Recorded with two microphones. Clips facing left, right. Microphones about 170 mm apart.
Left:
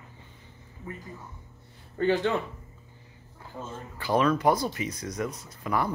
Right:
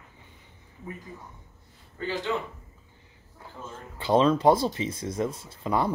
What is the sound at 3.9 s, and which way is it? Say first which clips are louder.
Speech: right 3 dB; 25° right (ahead or behind).